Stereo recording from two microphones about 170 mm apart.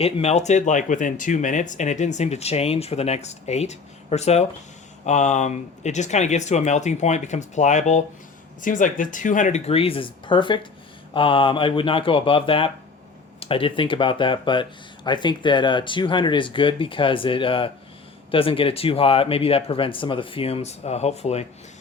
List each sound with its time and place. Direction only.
0.0 s speech: 40° left (ahead or behind)